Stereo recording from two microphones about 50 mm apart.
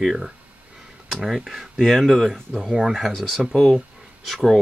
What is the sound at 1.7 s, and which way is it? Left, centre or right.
Speech, centre.